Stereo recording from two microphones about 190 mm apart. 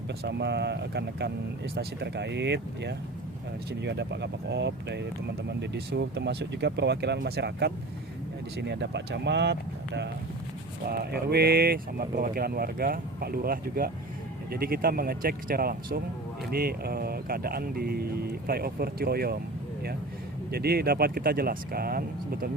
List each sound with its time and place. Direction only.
0.1 s speech: 60° right (ahead or behind)
20.5 s speech: 55° right (ahead or behind)